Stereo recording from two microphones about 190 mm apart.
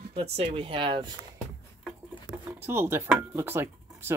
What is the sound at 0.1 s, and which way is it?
Speech, 30° right (ahead or behind).